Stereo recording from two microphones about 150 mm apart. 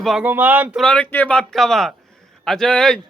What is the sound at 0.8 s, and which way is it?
A man's voice, 10° left (ahead or behind).